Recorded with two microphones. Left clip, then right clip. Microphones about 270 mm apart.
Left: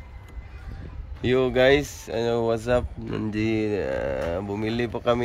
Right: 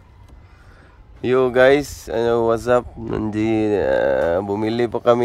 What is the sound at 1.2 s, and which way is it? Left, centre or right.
Speech, centre.